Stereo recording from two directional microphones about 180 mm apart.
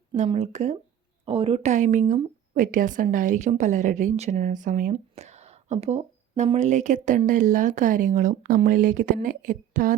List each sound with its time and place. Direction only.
0.2 s speech: 40° right (ahead or behind)